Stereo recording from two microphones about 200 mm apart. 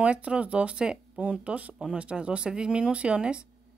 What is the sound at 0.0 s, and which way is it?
Speech, 5° right (ahead or behind).